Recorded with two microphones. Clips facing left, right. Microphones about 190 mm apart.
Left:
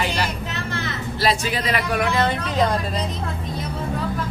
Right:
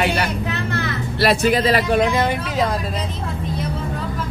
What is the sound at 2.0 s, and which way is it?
Speech, 15° right (ahead or behind).